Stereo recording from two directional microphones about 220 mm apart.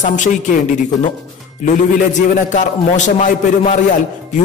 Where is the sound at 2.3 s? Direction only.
35° left (ahead or behind).